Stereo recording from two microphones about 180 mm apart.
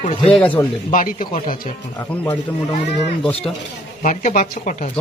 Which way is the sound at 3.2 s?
5° left (ahead or behind).